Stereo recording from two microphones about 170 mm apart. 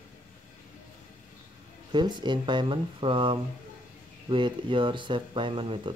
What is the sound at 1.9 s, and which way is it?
Speech, 25° right (ahead or behind).